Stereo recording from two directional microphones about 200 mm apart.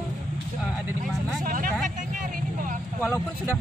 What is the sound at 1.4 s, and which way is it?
Speech, 45° right (ahead or behind).